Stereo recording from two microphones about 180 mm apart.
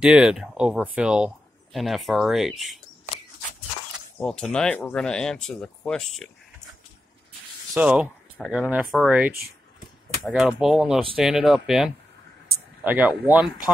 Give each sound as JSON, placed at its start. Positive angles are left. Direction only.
{"t": 0.0, "sound": "speech", "side_deg": -5}
{"t": 4.2, "sound": "speech", "side_deg": 5}
{"t": 7.7, "sound": "speech", "side_deg": -10}